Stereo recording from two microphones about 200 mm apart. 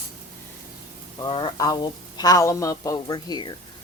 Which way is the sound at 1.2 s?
20° left (ahead or behind).